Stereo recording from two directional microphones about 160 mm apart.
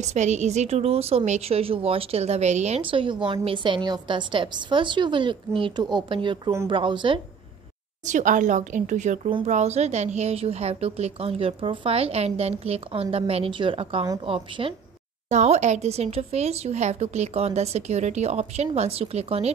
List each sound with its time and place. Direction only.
0.0 s a woman's voice: 45° right (ahead or behind)
8.1 s a woman's voice: 50° right (ahead or behind); by 14.7 s 35° right (ahead or behind)
15.2 s speech: 45° right (ahead or behind)